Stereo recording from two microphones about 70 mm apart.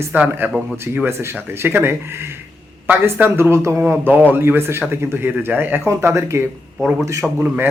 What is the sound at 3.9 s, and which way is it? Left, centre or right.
Speech, right.